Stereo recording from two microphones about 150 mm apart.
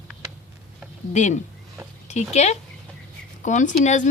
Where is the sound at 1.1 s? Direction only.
55° left (ahead or behind).